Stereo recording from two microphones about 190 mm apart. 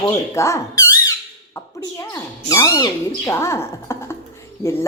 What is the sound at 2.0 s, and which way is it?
Speech, 15° left (ahead or behind).